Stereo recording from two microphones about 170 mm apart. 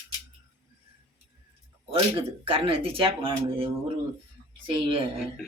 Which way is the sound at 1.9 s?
30° right (ahead or behind).